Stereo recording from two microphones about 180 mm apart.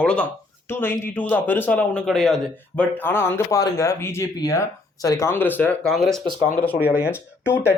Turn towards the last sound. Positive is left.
turn(degrees=10)  # may be behind; listen again after turning